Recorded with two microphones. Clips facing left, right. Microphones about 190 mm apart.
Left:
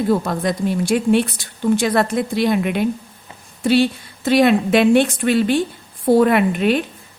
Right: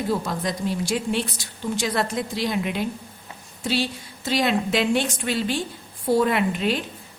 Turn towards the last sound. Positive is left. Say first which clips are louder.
# left 7 dB
turn(degrees=60)  # may be behind; listen again after turning